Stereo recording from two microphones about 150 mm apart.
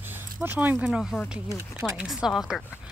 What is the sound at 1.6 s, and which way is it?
Speech, 20° right (ahead or behind).